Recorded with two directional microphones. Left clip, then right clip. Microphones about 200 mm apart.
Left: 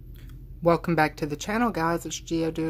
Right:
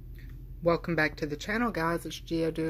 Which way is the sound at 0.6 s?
20° left (ahead or behind).